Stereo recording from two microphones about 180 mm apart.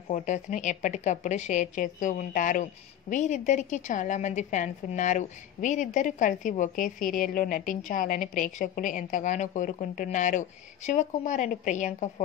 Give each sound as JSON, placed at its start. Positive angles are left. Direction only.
{"t": 0.1, "sound": "a woman's voice", "side_deg": 45}